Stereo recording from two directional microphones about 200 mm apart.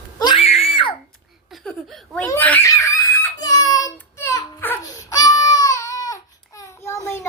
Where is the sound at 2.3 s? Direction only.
10° left (ahead or behind).